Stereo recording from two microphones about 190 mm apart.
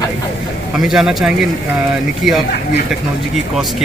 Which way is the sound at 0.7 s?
Centre (ahead or behind).